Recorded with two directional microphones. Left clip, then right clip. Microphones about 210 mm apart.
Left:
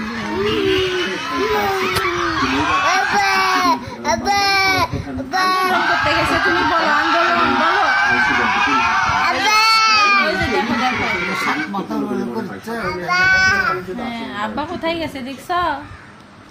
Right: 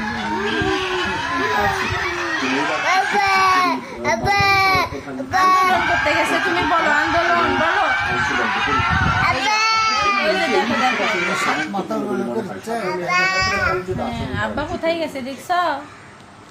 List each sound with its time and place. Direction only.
0.4 s a sound: 15° right (ahead or behind)
2.3 s a sound: 10° left (ahead or behind); by 5.7 s 5° right (ahead or behind)
5.8 s speech: 15° left (ahead or behind)
9.5 s goat: 20° left (ahead or behind)
10.3 s speech: 35° right (ahead or behind)
12.8 s child singing: 10° right (ahead or behind)